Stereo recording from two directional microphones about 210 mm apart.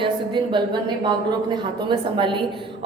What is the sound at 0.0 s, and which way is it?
A woman's voice, 20° right (ahead or behind).